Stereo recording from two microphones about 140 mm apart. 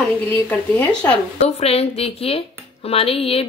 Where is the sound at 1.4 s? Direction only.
45° left (ahead or behind).